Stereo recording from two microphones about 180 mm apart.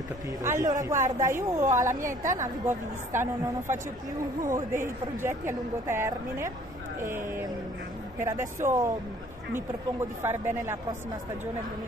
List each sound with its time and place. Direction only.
0.4 s a woman's voice: 15° right (ahead or behind)
4.4 s a woman's voice: 15° right (ahead or behind)
8.2 s a woman's voice: 15° right (ahead or behind)
10.2 s a woman's voice: 15° right (ahead or behind)